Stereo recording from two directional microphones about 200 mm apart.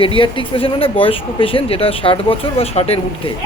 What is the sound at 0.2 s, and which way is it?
Speech, 25° left (ahead or behind).